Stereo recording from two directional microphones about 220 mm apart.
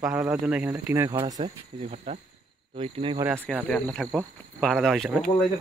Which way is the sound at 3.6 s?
5° left (ahead or behind).